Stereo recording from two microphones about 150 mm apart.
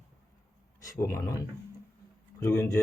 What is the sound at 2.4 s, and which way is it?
Speech, 15° left (ahead or behind).